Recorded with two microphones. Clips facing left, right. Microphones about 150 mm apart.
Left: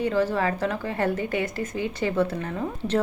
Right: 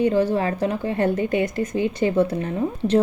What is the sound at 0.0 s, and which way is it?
Speech, 20° right (ahead or behind).